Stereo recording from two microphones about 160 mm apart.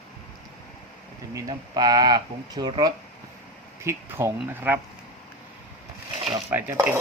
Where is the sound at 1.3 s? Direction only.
20° right (ahead or behind).